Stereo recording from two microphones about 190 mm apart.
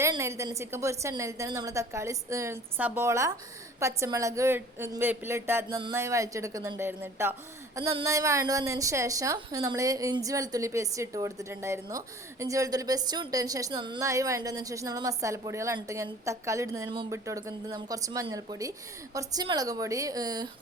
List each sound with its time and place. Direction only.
0.0 s a woman's voice: 15° right (ahead or behind)